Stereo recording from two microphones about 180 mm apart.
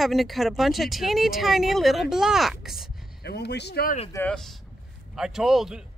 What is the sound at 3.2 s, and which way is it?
Speech, 70° left (ahead or behind).